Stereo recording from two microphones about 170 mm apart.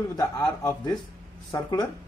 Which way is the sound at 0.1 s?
20° left (ahead or behind).